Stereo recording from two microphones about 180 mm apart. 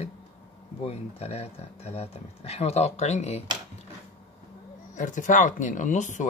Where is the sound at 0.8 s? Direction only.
35° left (ahead or behind).